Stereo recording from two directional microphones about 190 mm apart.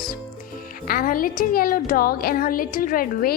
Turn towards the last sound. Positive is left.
turn(degrees=45)  # may be behind; listen again after turning